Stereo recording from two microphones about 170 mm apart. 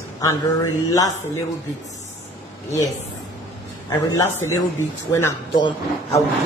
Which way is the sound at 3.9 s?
20° left (ahead or behind).